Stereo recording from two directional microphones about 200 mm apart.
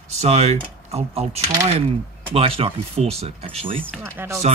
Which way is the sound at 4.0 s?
10° right (ahead or behind).